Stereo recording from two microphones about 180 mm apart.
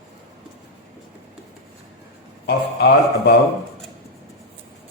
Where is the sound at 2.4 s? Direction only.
65° left (ahead or behind).